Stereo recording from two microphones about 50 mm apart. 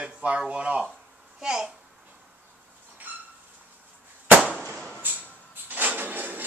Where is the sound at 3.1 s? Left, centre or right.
Right.